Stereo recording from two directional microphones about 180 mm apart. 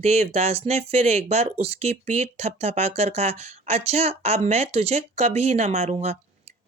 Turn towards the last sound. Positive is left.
turn(degrees=-35)  # may be behind; listen again after turning